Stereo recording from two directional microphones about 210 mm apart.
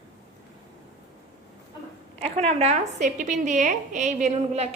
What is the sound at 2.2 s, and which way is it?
Speech, 30° right (ahead or behind).